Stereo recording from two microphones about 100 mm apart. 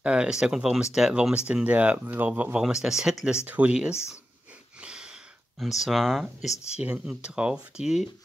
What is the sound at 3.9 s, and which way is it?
Speech, 30° left (ahead or behind).